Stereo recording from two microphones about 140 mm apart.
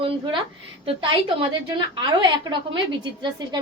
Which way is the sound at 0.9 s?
40° right (ahead or behind).